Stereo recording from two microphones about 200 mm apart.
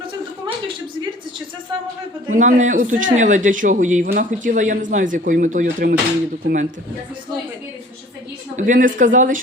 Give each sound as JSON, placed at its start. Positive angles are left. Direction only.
{"t": 2.3, "sound": "a man's voice", "side_deg": -40}
{"t": 8.5, "sound": "a man's voice", "side_deg": -40}